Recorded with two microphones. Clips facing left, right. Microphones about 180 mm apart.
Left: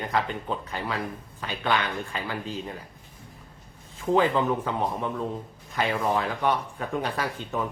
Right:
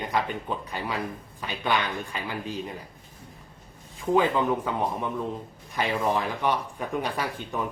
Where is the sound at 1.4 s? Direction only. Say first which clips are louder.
Even; 15° right (ahead or behind).